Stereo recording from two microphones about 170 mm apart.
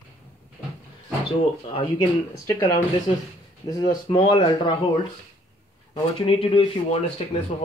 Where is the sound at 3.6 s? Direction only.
25° left (ahead or behind).